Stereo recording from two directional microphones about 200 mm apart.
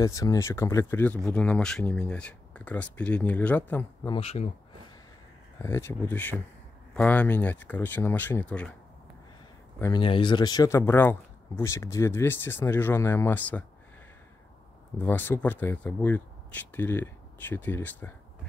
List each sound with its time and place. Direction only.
0.0 s speech: 15° left (ahead or behind)
4.1 s speech: 30° left (ahead or behind)
5.6 s speech: 10° left (ahead or behind)
9.8 s speech: 15° left (ahead or behind)
15.0 s speech: 10° left (ahead or behind)